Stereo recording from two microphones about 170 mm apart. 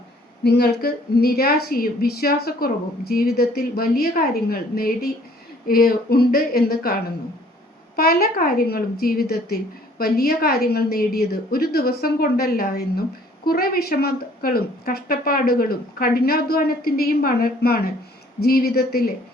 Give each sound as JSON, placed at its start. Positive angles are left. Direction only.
{"t": 0.4, "sound": "a woman's voice", "side_deg": 75}
{"t": 7.9, "sound": "a woman's voice", "side_deg": 60}